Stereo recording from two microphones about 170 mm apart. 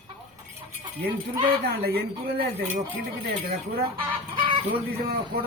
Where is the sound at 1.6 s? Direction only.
70° right (ahead or behind).